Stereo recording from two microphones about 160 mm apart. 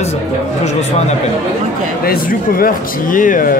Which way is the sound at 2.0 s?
65° left (ahead or behind).